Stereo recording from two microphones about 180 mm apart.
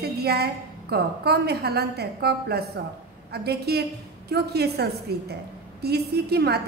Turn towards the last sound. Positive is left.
turn(degrees=-65)  # may be behind; listen again after turning